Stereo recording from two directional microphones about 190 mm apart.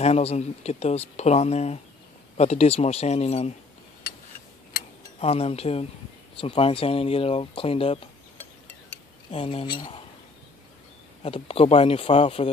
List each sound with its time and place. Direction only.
0.0 s speech: 35° left (ahead or behind)
5.2 s speech: 30° left (ahead or behind)
9.3 s speech: 30° left (ahead or behind)
11.2 s speech: 30° left (ahead or behind)